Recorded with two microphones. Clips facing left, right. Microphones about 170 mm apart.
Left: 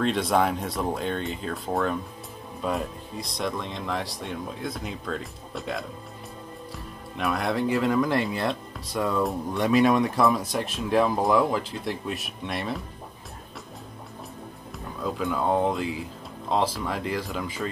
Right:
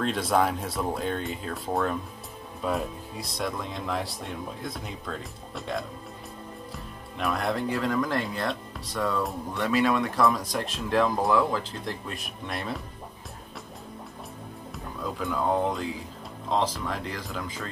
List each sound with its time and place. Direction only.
0.0 s speech: centre (ahead or behind); by 10.2 s 15° left (ahead or behind)
10.2 s speech: 5° left (ahead or behind)
15.0 s speech: 5° left (ahead or behind)